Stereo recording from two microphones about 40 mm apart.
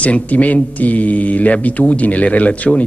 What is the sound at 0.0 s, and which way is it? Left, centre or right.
Speech, left.